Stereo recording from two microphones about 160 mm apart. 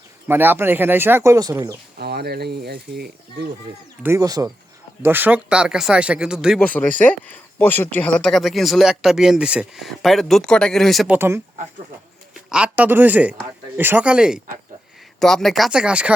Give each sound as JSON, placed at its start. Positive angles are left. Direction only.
{"t": 0.3, "sound": "speech", "side_deg": -15}
{"t": 2.0, "sound": "speech", "side_deg": -90}
{"t": 4.0, "sound": "speech", "side_deg": -20}
{"t": 6.7, "sound": "speech", "side_deg": 10}
{"t": 11.1, "sound": "speech", "side_deg": -15}
{"t": 12.5, "sound": "speech", "side_deg": -5}